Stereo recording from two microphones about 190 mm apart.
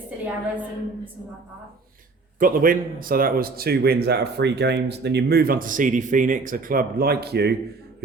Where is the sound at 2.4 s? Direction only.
45° right (ahead or behind).